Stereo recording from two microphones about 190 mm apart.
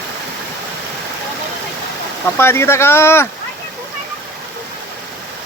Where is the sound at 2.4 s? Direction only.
15° left (ahead or behind).